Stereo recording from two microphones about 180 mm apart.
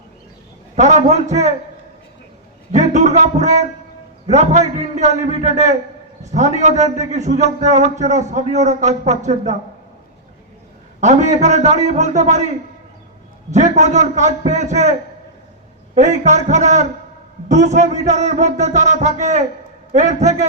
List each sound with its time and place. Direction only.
0.8 s a man's voice: 40° right (ahead or behind)
2.7 s a man's voice: 40° right (ahead or behind)
11.0 s a man's voice: 40° right (ahead or behind)
16.0 s a man's voice: 40° right (ahead or behind)